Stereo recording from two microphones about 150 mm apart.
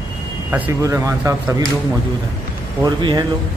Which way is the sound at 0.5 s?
15° right (ahead or behind).